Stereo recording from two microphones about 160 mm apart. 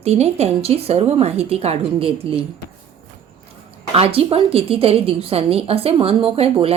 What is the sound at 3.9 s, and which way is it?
A woman's voice, 40° right (ahead or behind).